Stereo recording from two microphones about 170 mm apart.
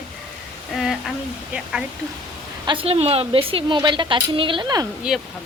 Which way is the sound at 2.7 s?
35° right (ahead or behind).